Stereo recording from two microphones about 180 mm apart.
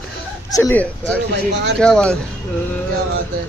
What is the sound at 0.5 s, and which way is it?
Speech, 15° left (ahead or behind).